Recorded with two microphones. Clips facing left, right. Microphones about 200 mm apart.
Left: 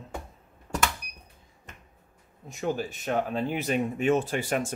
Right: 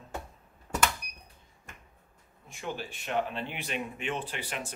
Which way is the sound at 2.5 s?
40° left (ahead or behind).